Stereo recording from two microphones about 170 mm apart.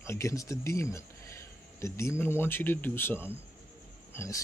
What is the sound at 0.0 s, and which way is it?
Speech, 15° left (ahead or behind).